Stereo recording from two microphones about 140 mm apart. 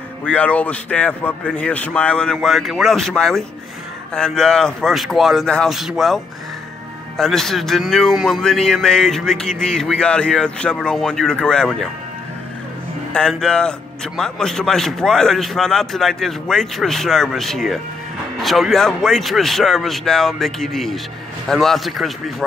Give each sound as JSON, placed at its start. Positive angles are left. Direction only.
{"t": 0.2, "sound": "a man's voice", "side_deg": 10}
{"t": 13.1, "sound": "a man's voice", "side_deg": 5}